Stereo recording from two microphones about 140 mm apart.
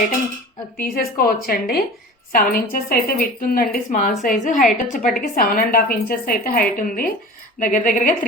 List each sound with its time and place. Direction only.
0.8 s a woman's voice: 90° left; by 5.1 s 70° left (ahead or behind)
5.2 s a woman's voice: 90° left
7.6 s speech: 70° left (ahead or behind)